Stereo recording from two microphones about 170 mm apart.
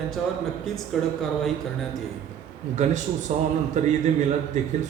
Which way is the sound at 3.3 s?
45° right (ahead or behind).